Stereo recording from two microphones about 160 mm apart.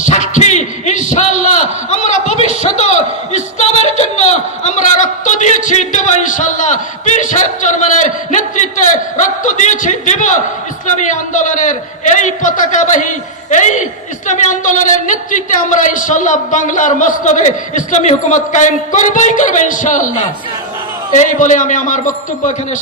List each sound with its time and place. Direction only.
0.0 s a sound: 45° left (ahead or behind)
11.1 s a woman's voice: 50° left (ahead or behind)
21.2 s a woman's voice: 50° left (ahead or behind)